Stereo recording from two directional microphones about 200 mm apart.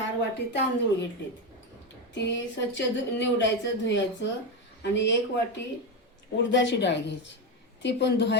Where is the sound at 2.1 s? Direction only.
60° left (ahead or behind).